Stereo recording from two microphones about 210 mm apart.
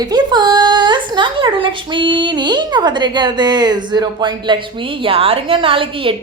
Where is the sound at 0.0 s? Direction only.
20° right (ahead or behind).